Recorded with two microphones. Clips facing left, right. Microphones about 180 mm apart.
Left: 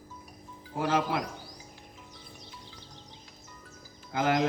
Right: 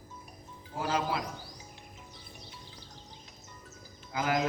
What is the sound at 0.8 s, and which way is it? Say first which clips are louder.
Speech: left 3 dB; 60° left (ahead or behind).